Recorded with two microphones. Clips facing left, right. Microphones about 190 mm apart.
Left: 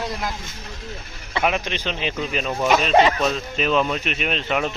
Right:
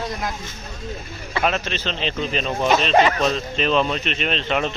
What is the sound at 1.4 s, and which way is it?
Speech, 15° left (ahead or behind).